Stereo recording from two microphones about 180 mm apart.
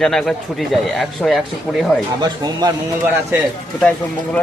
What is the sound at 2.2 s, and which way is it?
Speech, 20° right (ahead or behind).